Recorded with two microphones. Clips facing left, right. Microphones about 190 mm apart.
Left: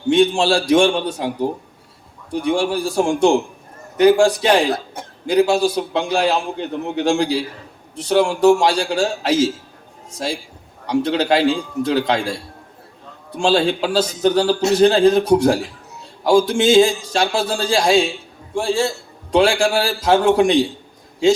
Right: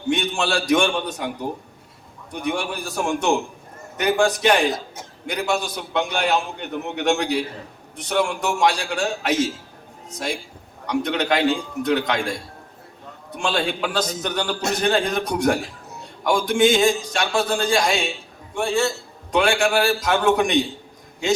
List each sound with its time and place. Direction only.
0.1 s a man's voice: 30° left (ahead or behind)
2.3 s a man's voice: 30° left (ahead or behind)
10.8 s a man's voice: 30° left (ahead or behind)